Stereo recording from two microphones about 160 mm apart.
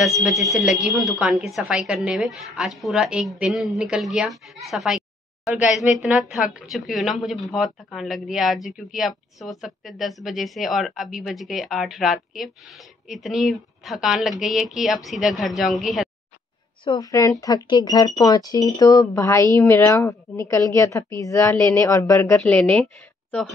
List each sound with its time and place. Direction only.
0.0 s a woman's voice: centre (ahead or behind)
16.8 s a woman's voice: 25° left (ahead or behind)
22.4 s a woman's voice: 5° left (ahead or behind)